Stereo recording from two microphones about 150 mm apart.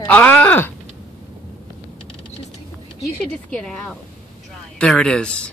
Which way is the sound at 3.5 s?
5° left (ahead or behind).